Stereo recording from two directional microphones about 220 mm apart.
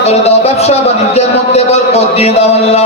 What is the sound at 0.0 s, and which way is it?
A man's voice, 30° left (ahead or behind).